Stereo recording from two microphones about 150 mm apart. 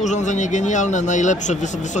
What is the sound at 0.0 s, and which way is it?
Speech, 55° left (ahead or behind).